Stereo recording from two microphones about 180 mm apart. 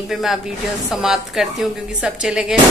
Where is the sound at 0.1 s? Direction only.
Centre (ahead or behind).